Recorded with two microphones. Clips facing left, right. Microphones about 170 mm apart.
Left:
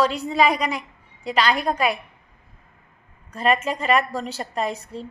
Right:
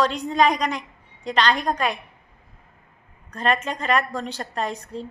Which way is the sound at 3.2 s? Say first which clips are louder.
Left 2 dB; 5° left (ahead or behind).